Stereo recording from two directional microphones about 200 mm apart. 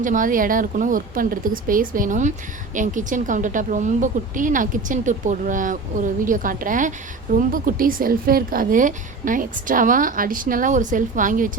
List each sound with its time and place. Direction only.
0.0 s a woman's voice: 40° right (ahead or behind)